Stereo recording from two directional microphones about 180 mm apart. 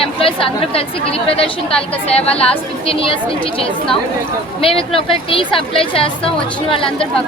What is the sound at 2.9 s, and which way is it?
Speech, 30° left (ahead or behind).